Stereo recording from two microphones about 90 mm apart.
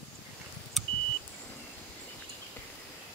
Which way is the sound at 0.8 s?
Centre (ahead or behind).